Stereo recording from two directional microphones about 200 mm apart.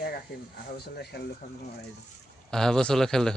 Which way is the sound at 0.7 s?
55° left (ahead or behind).